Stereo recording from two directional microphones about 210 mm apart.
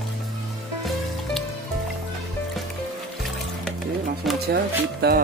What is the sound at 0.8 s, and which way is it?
Music, centre (ahead or behind).